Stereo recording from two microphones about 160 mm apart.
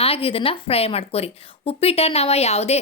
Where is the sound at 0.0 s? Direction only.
35° left (ahead or behind).